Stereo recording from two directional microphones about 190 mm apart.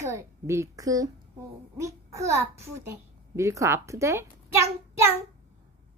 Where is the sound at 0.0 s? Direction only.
15° right (ahead or behind).